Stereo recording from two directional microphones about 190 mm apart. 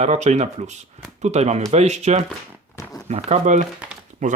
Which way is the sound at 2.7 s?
15° left (ahead or behind).